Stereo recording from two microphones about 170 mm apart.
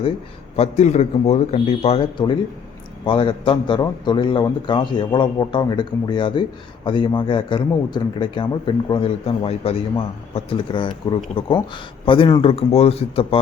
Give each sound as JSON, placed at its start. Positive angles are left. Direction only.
{"t": 0.5, "sound": "a man's voice", "side_deg": 40}